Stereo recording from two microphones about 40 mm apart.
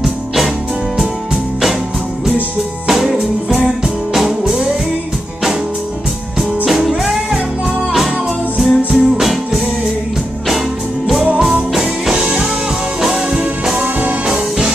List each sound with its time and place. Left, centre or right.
0.9 s music: centre
2.9 s music: centre
6.6 s music: centre
8.5 s music: centre
11.3 s music: right
11.7 s music: centre